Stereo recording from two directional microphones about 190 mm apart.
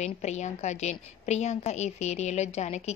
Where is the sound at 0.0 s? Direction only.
35° left (ahead or behind).